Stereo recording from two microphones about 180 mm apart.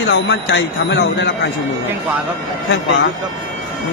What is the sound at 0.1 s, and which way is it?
Speech, 90° left.